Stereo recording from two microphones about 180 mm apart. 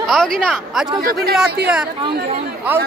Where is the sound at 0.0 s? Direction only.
Centre (ahead or behind).